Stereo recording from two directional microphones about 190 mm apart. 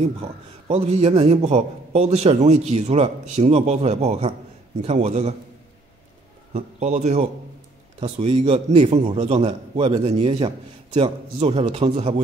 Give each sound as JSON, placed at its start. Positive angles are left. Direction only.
{"t": 0.0, "sound": "a man's voice", "side_deg": -30}
{"t": 6.5, "sound": "a man's voice", "side_deg": -40}
{"t": 8.0, "sound": "a man's voice", "side_deg": -25}